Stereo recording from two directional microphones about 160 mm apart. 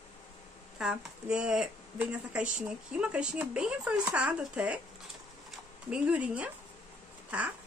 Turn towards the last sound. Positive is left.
turn(degrees=-10)  # may be behind; listen again after turning